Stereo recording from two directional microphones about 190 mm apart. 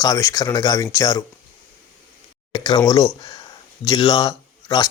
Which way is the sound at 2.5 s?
20° left (ahead or behind).